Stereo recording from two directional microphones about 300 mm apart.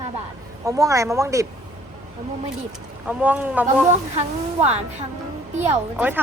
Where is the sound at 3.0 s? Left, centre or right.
Centre.